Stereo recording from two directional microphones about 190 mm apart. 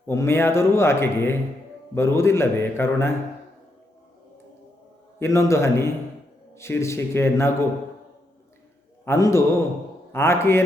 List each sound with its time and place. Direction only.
0.1 s a man's voice: 15° left (ahead or behind)
5.2 s a man's voice: 15° left (ahead or behind)
9.0 s a man's voice: 15° left (ahead or behind)